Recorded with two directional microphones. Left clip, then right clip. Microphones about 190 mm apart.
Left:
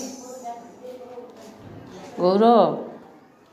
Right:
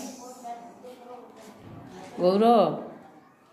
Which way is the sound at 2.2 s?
Centre (ahead or behind).